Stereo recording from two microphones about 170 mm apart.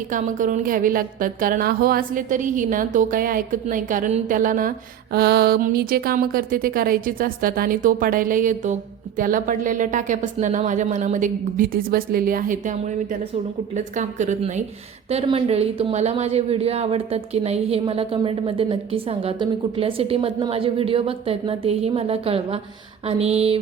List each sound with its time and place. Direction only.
0.1 s a woman's voice: 50° right (ahead or behind)
5.1 s a woman's voice: 70° right (ahead or behind); by 23.6 s 35° right (ahead or behind)